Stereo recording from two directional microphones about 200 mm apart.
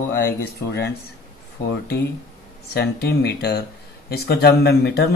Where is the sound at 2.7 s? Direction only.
55° left (ahead or behind).